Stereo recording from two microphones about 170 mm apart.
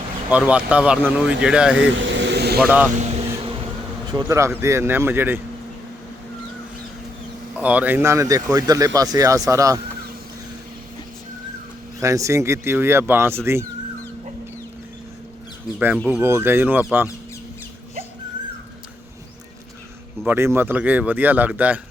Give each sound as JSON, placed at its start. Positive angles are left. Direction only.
{"t": 0.3, "sound": "speech", "side_deg": -10}
{"t": 1.9, "sound": "vehicle", "side_deg": -90}
{"t": 2.6, "sound": "speech", "side_deg": -10}
{"t": 2.9, "sound": "speech", "side_deg": -45}
{"t": 4.1, "sound": "speech", "side_deg": -20}
{"t": 7.5, "sound": "speech", "side_deg": -10}
{"t": 11.9, "sound": "speech", "side_deg": -20}
{"t": 16.1, "sound": "speech", "side_deg": -15}
{"t": 20.2, "sound": "speech", "side_deg": -15}